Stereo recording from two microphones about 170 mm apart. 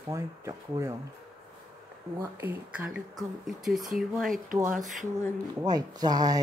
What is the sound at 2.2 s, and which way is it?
Speech, 10° right (ahead or behind).